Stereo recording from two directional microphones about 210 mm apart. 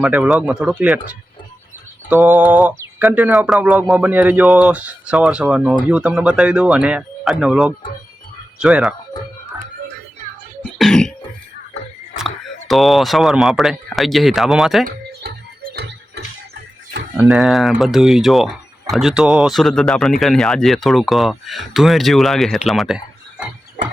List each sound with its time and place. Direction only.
0.0 s speech: 5° right (ahead or behind)
2.0 s a sound: 5° right (ahead or behind)
2.6 s speech: 5° right (ahead or behind)
10.6 s throat clearing: 5° left (ahead or behind)
12.1 s speech: centre (ahead or behind)
15.2 s music: 50° right (ahead or behind)
17.2 s speech: centre (ahead or behind)